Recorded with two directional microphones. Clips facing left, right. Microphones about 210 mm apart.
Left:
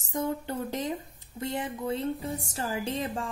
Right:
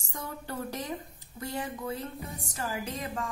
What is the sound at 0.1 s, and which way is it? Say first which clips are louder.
A woman's voice: left 8 dB; 20° left (ahead or behind).